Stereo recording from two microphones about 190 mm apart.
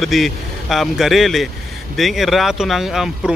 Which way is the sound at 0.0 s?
Centre (ahead or behind).